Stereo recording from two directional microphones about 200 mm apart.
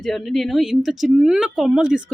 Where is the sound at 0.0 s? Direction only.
Centre (ahead or behind).